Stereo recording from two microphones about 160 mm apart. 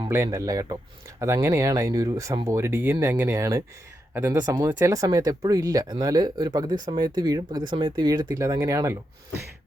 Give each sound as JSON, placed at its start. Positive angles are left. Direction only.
{"t": 0.0, "sound": "speech", "side_deg": -20}